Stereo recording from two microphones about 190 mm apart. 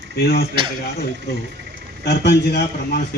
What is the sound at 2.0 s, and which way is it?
A man's voice, 65° left (ahead or behind).